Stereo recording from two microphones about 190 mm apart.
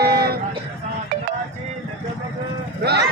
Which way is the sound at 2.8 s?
60° right (ahead or behind).